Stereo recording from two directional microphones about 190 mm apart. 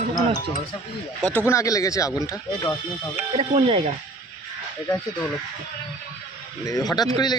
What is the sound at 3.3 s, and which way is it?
Speech, 30° right (ahead or behind).